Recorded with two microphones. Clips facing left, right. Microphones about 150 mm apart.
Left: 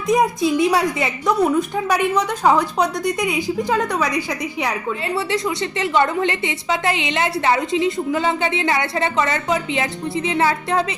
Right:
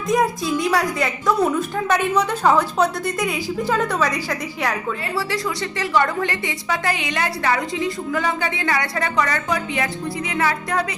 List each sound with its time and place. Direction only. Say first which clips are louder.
0.1 s a woman's voice: left 3 dB; 20° left (ahead or behind)
1.9 s a woman's voice: right 1 dB; 10° left (ahead or behind)
5.8 s a woman's voice: left 2 dB; 20° left (ahead or behind)